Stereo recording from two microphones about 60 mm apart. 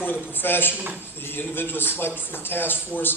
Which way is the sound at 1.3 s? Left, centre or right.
Left.